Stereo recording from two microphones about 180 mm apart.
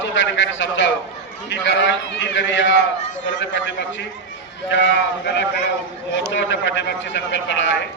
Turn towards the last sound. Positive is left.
turn(degrees=85)